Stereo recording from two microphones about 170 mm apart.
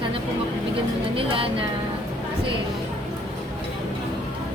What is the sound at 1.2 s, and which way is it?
Speech, 30° right (ahead or behind).